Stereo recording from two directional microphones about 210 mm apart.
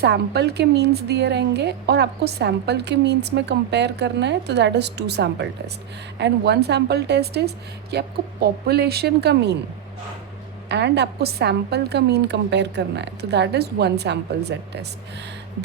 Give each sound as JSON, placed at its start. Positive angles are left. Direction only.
{"t": 0.0, "sound": "a woman's voice", "side_deg": -50}
{"t": 10.7, "sound": "a woman's voice", "side_deg": -55}